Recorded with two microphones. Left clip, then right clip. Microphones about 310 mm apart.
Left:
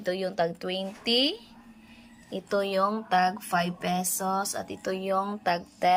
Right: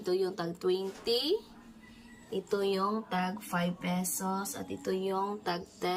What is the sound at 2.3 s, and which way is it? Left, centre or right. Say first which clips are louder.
Speech: left 4 dB; centre.